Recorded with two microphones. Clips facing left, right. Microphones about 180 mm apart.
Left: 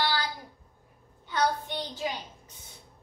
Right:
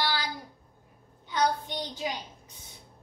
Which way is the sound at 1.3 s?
15° right (ahead or behind).